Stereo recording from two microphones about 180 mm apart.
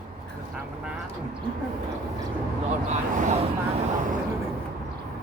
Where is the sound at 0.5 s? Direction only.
5° right (ahead or behind).